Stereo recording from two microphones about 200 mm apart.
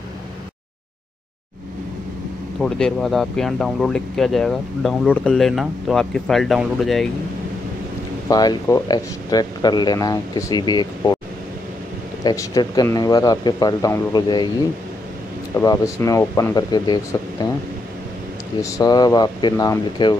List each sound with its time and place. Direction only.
2.6 s speech: centre (ahead or behind)
8.3 s speech: 20° left (ahead or behind)
12.2 s speech: 20° left (ahead or behind)
15.5 s speech: 15° left (ahead or behind)
18.6 s speech: 15° left (ahead or behind)